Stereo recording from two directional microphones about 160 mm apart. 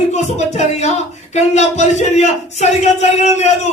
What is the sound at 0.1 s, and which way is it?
Speech, 45° left (ahead or behind).